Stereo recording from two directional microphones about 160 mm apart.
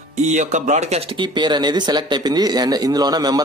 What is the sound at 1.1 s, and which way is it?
Speech, 30° right (ahead or behind).